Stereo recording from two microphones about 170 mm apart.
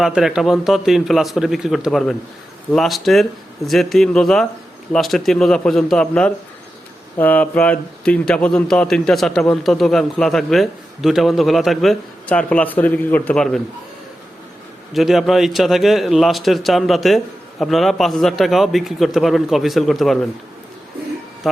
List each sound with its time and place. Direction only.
0.0 s a man's voice: 5° right (ahead or behind)
14.9 s a man's voice: centre (ahead or behind)
21.5 s a man's voice: centre (ahead or behind)